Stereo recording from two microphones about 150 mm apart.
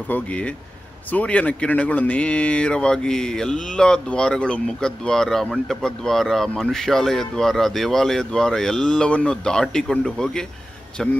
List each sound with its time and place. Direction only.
0.1 s speech: 10° left (ahead or behind)